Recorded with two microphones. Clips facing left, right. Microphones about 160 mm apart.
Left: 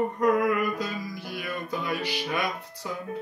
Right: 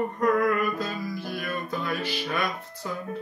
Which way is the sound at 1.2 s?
50° right (ahead or behind).